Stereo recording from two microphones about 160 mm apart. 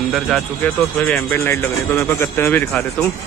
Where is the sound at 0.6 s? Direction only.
10° left (ahead or behind).